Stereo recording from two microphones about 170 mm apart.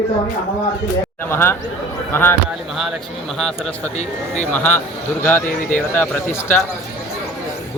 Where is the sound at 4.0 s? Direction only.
45° left (ahead or behind).